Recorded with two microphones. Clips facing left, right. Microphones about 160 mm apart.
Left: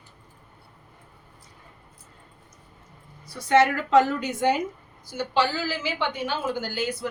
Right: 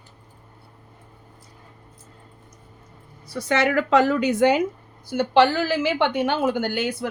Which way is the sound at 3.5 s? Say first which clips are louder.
Even; 90° right.